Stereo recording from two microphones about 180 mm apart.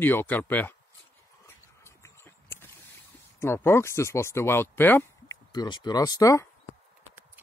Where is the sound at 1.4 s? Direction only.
15° left (ahead or behind).